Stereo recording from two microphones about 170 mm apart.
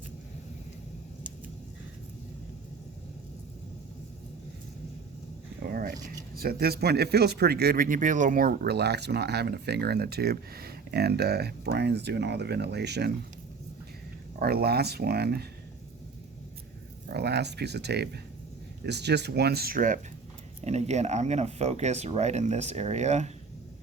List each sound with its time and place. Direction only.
5.6 s a sound: 60° right (ahead or behind)
6.3 s speech: 65° right (ahead or behind); by 13.1 s 80° right
14.3 s speech: 65° right (ahead or behind)
17.1 s speech: 75° right (ahead or behind); by 20.0 s 55° right (ahead or behind)
20.7 s speech: 40° right (ahead or behind)